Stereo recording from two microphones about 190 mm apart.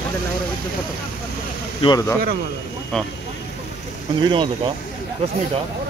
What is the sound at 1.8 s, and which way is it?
Speech, 20° left (ahead or behind).